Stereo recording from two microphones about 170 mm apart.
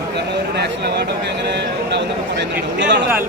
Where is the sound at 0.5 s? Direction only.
80° right.